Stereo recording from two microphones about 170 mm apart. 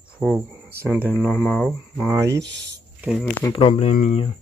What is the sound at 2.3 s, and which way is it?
Speech, 90° right.